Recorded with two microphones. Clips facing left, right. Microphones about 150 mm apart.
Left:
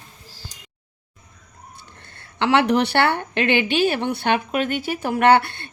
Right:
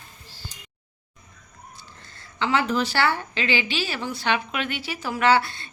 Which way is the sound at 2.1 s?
70° left (ahead or behind).